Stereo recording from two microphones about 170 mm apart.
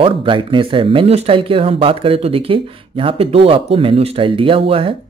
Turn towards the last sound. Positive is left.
turn(degrees=-35)  # may be behind; listen again after turning